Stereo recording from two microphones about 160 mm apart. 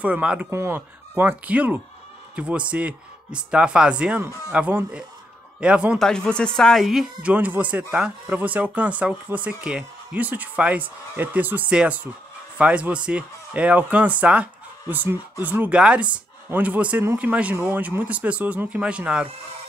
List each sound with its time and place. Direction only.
0.0 s speech: 5° right (ahead or behind)
6.0 s speech: 5° left (ahead or behind)